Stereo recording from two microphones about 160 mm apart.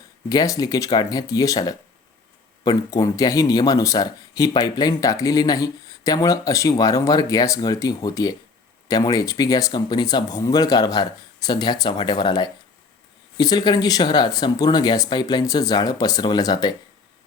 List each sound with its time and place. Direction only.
0.3 s speech: 20° left (ahead or behind)